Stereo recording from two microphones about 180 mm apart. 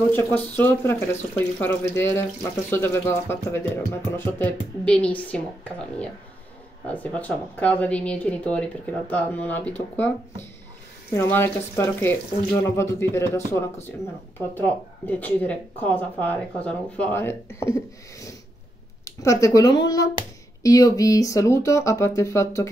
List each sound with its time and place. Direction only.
0.1 s speech: 10° left (ahead or behind)
11.1 s speech: 10° left (ahead or behind)